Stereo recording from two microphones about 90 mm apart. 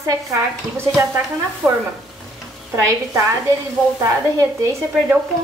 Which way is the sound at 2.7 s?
35° right (ahead or behind).